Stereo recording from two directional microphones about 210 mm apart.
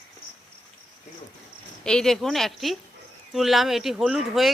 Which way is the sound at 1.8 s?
5° left (ahead or behind).